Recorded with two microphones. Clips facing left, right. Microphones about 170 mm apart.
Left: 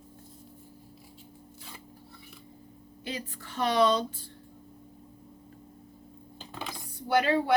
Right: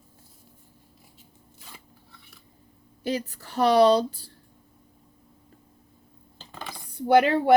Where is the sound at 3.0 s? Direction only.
40° right (ahead or behind).